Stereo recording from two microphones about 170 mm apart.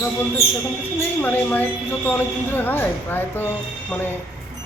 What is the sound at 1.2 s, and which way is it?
A man's voice, 10° left (ahead or behind).